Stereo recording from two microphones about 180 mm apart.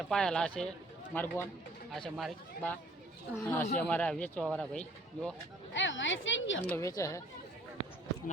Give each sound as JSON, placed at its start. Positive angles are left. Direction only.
{"t": 0.1, "sound": "a man's voice", "side_deg": 5}
{"t": 3.4, "sound": "a man's voice", "side_deg": 15}
{"t": 5.7, "sound": "speech", "side_deg": 90}
{"t": 6.7, "sound": "a man's voice", "side_deg": 15}